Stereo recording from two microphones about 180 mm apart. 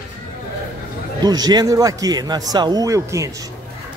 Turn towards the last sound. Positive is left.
turn(degrees=-15)  # may be behind; listen again after turning